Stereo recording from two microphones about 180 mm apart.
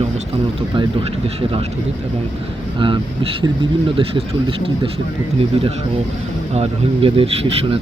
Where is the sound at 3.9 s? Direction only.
30° right (ahead or behind).